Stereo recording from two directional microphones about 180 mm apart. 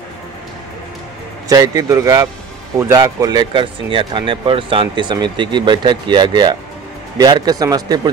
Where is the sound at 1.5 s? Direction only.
20° right (ahead or behind).